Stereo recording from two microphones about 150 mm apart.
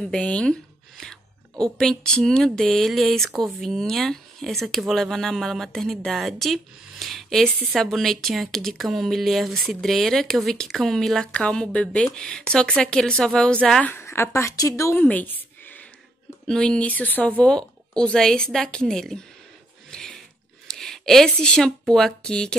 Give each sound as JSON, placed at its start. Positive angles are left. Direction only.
{"t": 0.1, "sound": "speech", "side_deg": 5}
{"t": 13.9, "sound": "a woman's voice", "side_deg": 15}
{"t": 15.0, "sound": "a sound", "side_deg": 10}
{"t": 16.4, "sound": "speech", "side_deg": 5}
{"t": 19.9, "sound": "a sound", "side_deg": 5}
{"t": 20.6, "sound": "speech", "side_deg": 5}